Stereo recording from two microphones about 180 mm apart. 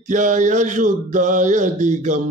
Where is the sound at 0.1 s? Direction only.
45° right (ahead or behind).